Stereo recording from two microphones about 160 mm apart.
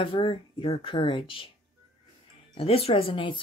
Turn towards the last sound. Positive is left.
turn(degrees=30)  # may be behind; listen again after turning